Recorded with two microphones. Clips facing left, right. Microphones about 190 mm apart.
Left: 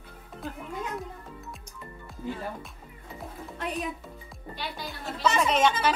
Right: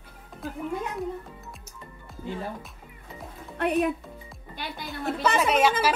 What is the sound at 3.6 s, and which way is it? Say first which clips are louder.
Speech: right 9 dB; 65° right (ahead or behind).